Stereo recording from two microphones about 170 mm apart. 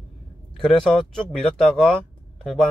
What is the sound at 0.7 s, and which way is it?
Speech, centre (ahead or behind).